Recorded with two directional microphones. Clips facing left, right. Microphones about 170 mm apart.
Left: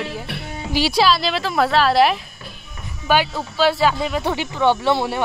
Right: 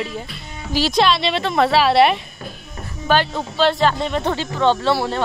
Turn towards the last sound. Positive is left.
turn(degrees=15)  # may be behind; listen again after turning